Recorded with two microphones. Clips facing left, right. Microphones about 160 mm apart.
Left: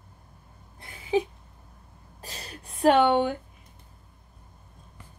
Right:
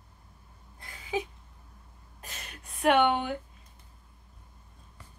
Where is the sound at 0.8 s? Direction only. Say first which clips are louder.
Left 7 dB; 25° left (ahead or behind).